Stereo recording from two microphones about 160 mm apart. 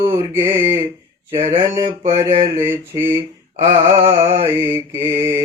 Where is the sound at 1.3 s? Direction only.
35° right (ahead or behind).